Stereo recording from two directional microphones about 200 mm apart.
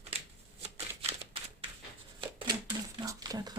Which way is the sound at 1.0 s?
25° right (ahead or behind).